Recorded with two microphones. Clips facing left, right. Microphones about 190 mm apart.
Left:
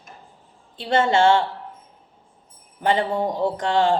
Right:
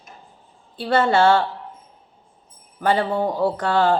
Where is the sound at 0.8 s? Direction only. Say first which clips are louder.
Right 1 dB; 25° left (ahead or behind).